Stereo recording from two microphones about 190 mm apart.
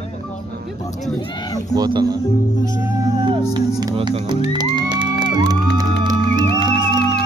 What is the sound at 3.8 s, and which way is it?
Speech, 25° right (ahead or behind).